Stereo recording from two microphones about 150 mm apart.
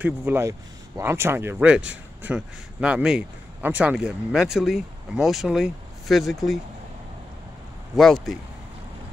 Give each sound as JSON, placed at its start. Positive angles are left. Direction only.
{"t": 0.0, "sound": "speech", "side_deg": -15}
{"t": 7.9, "sound": "speech", "side_deg": 0}